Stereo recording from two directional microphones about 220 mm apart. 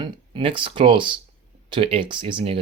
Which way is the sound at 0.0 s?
20° right (ahead or behind).